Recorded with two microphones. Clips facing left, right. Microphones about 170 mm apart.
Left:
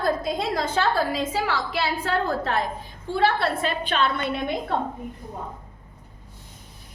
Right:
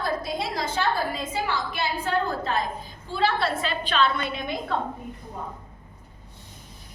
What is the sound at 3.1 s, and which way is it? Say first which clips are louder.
A woman's voice: left 2 dB; 60° left (ahead or behind).